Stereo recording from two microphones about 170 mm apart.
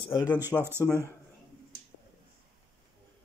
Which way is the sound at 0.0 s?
25° left (ahead or behind).